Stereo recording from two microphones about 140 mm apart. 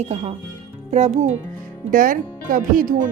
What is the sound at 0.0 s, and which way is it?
Speech, 55° right (ahead or behind).